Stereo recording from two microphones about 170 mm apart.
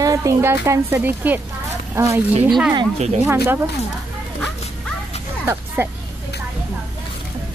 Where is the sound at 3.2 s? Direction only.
10° right (ahead or behind).